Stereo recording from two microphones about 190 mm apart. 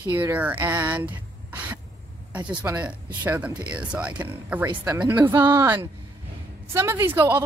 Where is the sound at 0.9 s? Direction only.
10° right (ahead or behind).